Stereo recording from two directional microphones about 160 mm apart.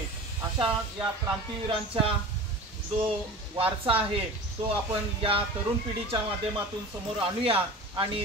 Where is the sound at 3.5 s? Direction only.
35° right (ahead or behind).